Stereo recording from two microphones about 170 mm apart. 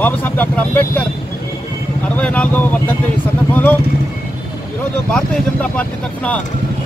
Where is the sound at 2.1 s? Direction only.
10° left (ahead or behind).